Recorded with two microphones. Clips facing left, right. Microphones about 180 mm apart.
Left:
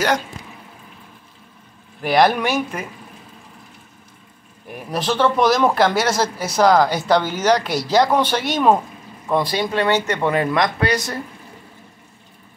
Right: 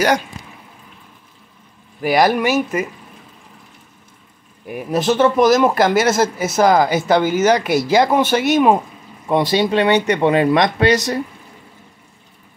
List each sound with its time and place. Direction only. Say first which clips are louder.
2.0 s speech: right 1 dB; 10° right (ahead or behind)
4.6 s speech: right 5 dB; 10° right (ahead or behind)
9.3 s speech: right 4 dB; 20° right (ahead or behind)